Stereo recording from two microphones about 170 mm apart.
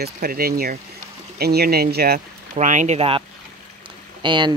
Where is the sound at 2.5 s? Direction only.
45° right (ahead or behind).